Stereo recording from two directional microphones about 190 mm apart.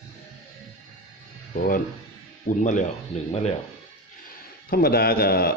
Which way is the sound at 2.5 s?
40° left (ahead or behind).